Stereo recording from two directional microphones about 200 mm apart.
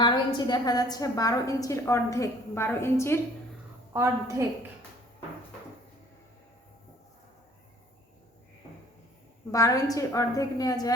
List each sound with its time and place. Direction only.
0.0 s a woman's voice: 20° left (ahead or behind)
3.9 s a woman's voice: 15° right (ahead or behind)
9.5 s a woman's voice: 15° left (ahead or behind)